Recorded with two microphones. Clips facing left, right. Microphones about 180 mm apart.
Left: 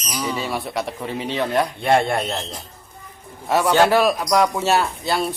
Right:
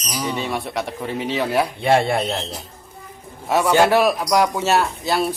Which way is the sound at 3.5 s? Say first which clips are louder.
Even; centre (ahead or behind).